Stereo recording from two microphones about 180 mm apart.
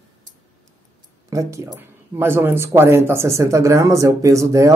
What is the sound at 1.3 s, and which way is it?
Speech, 15° right (ahead or behind).